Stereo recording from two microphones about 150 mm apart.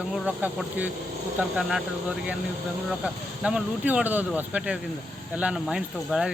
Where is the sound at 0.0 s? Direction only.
5° right (ahead or behind).